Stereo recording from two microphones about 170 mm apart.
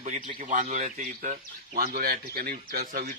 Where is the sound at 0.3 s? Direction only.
45° right (ahead or behind).